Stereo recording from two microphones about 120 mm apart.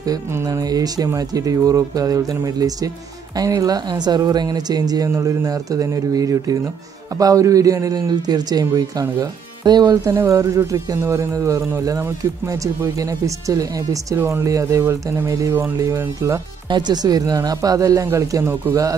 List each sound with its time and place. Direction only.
0.0 s speech: 25° right (ahead or behind)
10.1 s speech: 25° right (ahead or behind)
16.6 s speech: 40° right (ahead or behind)